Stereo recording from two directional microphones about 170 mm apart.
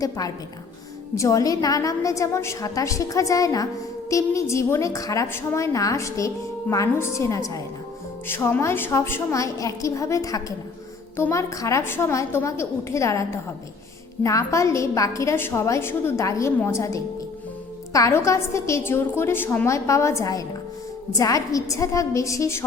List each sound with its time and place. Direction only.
0.0 s a woman's voice: 20° left (ahead or behind)
14.3 s a woman's voice: 20° left (ahead or behind)